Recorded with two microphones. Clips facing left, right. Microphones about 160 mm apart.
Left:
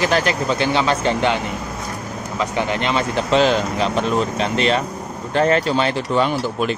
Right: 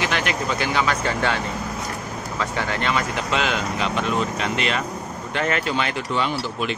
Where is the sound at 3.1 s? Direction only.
35° left (ahead or behind).